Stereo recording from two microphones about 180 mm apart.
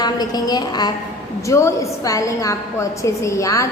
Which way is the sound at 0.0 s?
20° left (ahead or behind).